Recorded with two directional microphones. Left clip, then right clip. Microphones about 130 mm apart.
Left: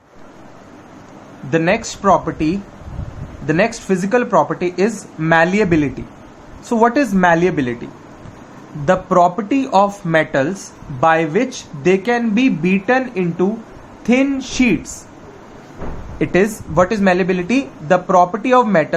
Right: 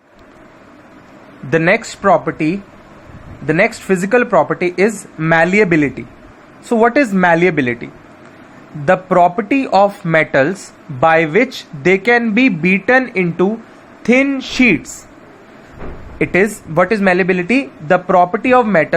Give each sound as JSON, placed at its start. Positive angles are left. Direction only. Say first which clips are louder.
{"t": 1.5, "sound": "speech", "louder": "right 3 dB", "side_deg": -55}
{"t": 6.7, "sound": "speech", "louder": "right 2 dB", "side_deg": -30}
{"t": 16.1, "sound": "speech", "louder": "right 2 dB", "side_deg": -35}